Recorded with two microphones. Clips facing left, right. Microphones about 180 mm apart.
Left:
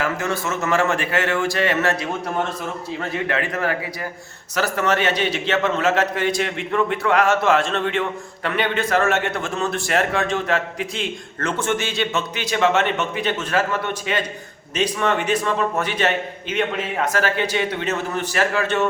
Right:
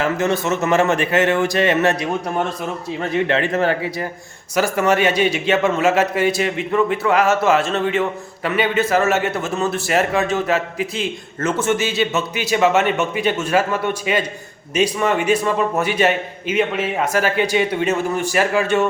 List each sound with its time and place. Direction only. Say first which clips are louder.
0.0 s a man's voice: right 5 dB; 20° right (ahead or behind)
3.1 s a man's voice: right 6 dB; 25° right (ahead or behind)
4.5 s a man's voice: right 4 dB; 10° right (ahead or behind)